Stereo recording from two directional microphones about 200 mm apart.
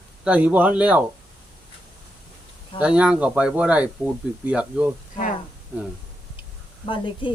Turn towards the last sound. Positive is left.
turn(degrees=25)  # may be behind; listen again after turning